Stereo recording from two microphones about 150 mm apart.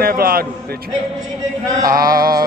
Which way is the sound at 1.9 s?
75° right (ahead or behind).